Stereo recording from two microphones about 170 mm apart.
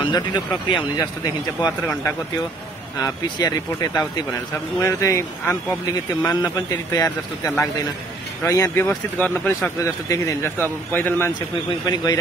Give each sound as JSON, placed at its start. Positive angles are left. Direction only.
{"t": 0.0, "sound": "a man's voice", "side_deg": 25}
{"t": 3.0, "sound": "a man's voice", "side_deg": 25}
{"t": 8.8, "sound": "speech", "side_deg": 0}
{"t": 9.8, "sound": "a man's voice", "side_deg": 20}
{"t": 11.8, "sound": "a man's voice", "side_deg": 25}